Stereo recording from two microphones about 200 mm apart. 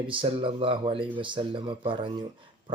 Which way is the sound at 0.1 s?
25° right (ahead or behind).